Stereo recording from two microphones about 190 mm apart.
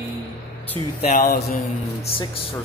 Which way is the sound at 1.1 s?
40° left (ahead or behind).